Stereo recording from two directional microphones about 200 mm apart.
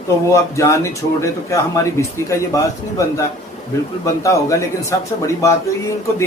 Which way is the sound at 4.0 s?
15° left (ahead or behind).